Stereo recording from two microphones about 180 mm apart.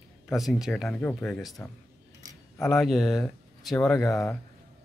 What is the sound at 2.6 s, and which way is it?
Speech, 5° left (ahead or behind).